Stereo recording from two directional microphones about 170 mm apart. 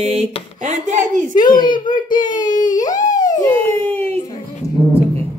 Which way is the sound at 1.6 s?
30° left (ahead or behind).